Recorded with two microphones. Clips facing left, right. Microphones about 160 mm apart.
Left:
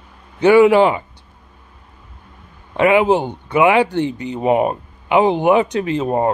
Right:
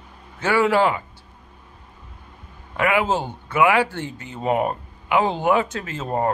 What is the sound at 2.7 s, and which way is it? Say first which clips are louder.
A man's voice: left 7 dB; 20° left (ahead or behind).